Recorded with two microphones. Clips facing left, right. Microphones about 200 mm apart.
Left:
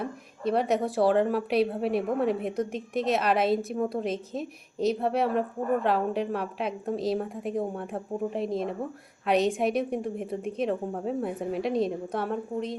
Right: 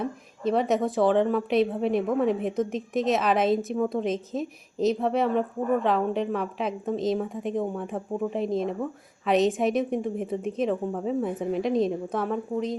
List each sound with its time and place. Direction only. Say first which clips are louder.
0.0 s a woman's voice: right 2 dB; centre (ahead or behind)